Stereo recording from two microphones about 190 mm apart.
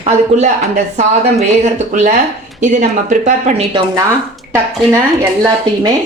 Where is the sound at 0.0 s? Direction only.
35° right (ahead or behind).